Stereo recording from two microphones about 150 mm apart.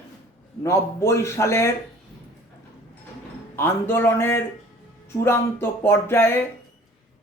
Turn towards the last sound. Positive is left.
turn(degrees=15)  # may be behind; listen again after turning